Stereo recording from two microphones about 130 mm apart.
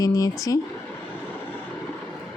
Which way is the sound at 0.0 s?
25° left (ahead or behind).